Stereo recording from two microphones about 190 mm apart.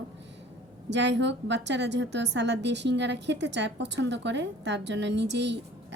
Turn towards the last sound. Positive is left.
turn(degrees=-65)  # may be behind; listen again after turning